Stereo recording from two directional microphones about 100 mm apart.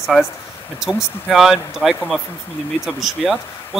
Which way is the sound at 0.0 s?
5° right (ahead or behind).